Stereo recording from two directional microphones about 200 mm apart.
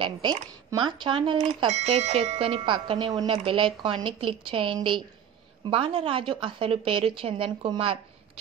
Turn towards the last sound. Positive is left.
turn(degrees=-25)  # may be behind; listen again after turning